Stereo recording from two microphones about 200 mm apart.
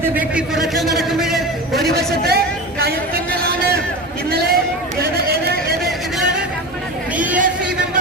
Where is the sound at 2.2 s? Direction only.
50° right (ahead or behind).